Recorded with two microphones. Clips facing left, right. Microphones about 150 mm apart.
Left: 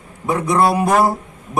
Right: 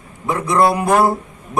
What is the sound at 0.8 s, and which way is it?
Speech, centre (ahead or behind).